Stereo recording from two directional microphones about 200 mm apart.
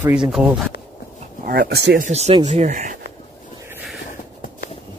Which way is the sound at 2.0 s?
35° right (ahead or behind).